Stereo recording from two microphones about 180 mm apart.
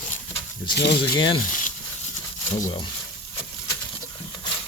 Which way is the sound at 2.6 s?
25° left (ahead or behind).